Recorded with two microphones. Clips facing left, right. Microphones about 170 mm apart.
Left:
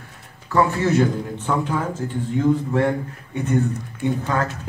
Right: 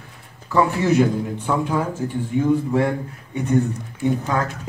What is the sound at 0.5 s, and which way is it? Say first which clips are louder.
A man's voice: right 1 dB; 15° right (ahead or behind).